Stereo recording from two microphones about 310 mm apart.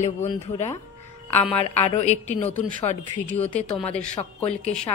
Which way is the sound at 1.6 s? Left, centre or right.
Left.